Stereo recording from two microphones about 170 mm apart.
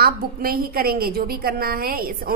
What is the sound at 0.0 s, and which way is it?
A woman's voice, 60° right (ahead or behind).